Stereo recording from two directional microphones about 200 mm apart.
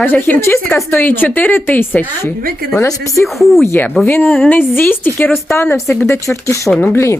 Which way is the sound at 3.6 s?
10° left (ahead or behind).